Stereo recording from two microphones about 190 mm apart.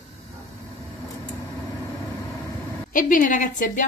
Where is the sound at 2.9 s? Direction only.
45° left (ahead or behind).